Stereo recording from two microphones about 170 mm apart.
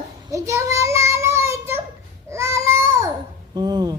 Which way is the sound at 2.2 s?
15° right (ahead or behind).